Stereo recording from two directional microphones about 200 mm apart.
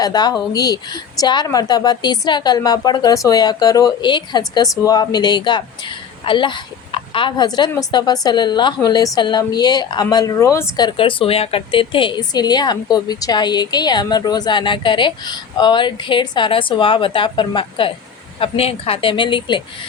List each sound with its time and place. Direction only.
0.0 s a woman's voice: 20° left (ahead or behind)